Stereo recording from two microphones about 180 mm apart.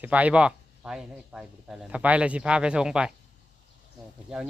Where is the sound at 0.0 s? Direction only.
10° right (ahead or behind).